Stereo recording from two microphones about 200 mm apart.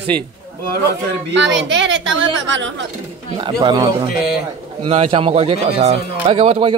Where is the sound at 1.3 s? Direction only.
65° right (ahead or behind).